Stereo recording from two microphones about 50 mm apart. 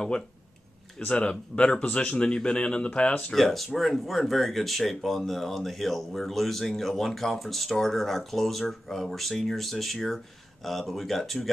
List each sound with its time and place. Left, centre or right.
0.9 s speech: left
3.3 s speech: centre